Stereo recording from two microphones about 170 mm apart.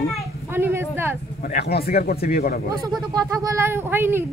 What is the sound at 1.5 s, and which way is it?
Speech, 70° left (ahead or behind).